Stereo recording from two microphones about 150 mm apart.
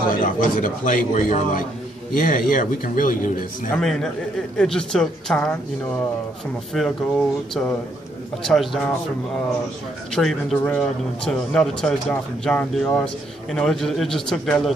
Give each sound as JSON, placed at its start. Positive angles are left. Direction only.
{"t": 0.1, "sound": "a man's voice", "side_deg": 60}
{"t": 3.7, "sound": "a man's voice", "side_deg": 5}
{"t": 6.7, "sound": "a man's voice", "side_deg": 0}
{"t": 10.1, "sound": "a man's voice", "side_deg": 5}